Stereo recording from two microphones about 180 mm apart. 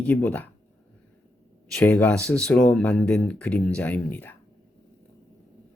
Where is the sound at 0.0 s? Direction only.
5° left (ahead or behind).